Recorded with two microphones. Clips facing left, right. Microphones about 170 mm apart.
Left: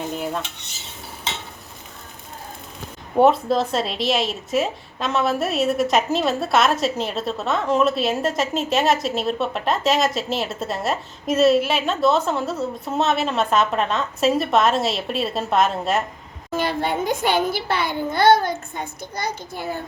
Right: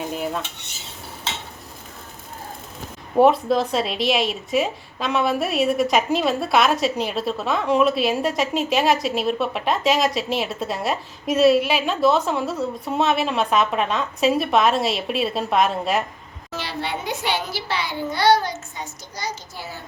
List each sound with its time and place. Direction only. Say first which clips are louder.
0.1 s a woman's voice: even; centre (ahead or behind)
3.2 s a woman's voice: even; centre (ahead or behind)
16.5 s a child's voice: left 6 dB; 50° left (ahead or behind)